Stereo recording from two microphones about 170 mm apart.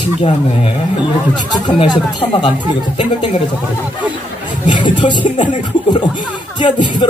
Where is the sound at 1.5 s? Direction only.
30° left (ahead or behind).